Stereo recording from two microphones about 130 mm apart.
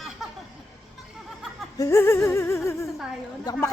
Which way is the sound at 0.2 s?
5° right (ahead or behind).